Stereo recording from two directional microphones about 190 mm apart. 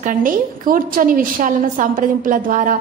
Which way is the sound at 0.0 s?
45° right (ahead or behind).